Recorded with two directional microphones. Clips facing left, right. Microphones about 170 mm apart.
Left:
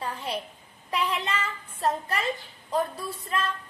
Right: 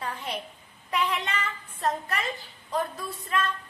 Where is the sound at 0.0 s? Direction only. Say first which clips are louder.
Left 2 dB; 30° left (ahead or behind).